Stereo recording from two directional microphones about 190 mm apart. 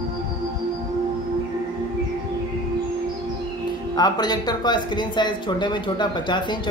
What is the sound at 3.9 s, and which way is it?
Speech, 20° left (ahead or behind).